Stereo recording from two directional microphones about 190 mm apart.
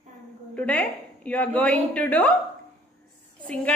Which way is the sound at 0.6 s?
5° left (ahead or behind).